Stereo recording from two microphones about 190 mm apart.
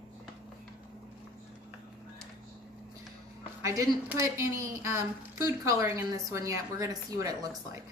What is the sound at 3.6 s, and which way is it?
Speech, 15° right (ahead or behind).